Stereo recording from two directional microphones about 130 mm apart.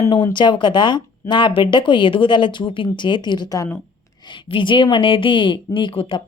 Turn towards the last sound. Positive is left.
turn(degrees=40)  # may be behind; listen again after turning